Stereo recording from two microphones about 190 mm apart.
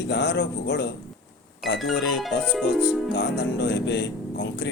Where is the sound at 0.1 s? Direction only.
65° left (ahead or behind).